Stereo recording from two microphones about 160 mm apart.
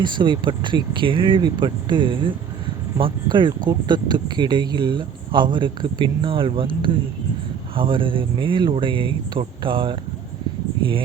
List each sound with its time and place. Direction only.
0.0 s speech: 30° right (ahead or behind)